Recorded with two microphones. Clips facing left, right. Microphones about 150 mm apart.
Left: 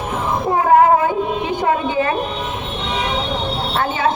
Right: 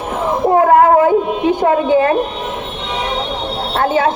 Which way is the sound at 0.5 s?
50° right (ahead or behind).